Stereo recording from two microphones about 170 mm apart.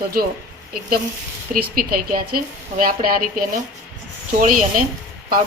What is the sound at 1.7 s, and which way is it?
A woman's voice, 60° right (ahead or behind).